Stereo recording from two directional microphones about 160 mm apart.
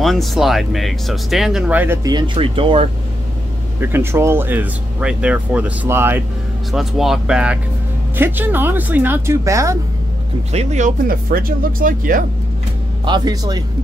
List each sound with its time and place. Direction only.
0.0 s speech: centre (ahead or behind)
2.0 s speech: 30° right (ahead or behind)
3.8 s speech: 15° right (ahead or behind)
6.7 s speech: centre (ahead or behind); by 9.8 s 20° right (ahead or behind)
10.5 s speech: 45° right (ahead or behind)
13.0 s speech: 25° right (ahead or behind)